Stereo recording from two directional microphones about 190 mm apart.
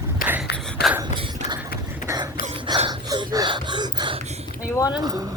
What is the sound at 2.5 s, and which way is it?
Gasp, 25° right (ahead or behind).